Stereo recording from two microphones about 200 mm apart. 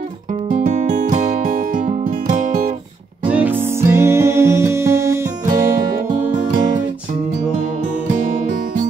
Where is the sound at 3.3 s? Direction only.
10° right (ahead or behind).